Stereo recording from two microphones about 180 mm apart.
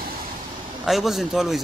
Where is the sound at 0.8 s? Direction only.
Centre (ahead or behind).